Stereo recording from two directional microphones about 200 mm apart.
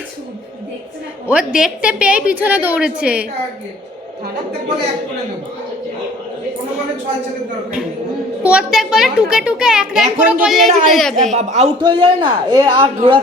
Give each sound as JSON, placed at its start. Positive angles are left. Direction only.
{"t": 1.3, "sound": "a woman's voice", "side_deg": -5}
{"t": 8.4, "sound": "a child's voice", "side_deg": -5}
{"t": 11.3, "sound": "a man's voice", "side_deg": -35}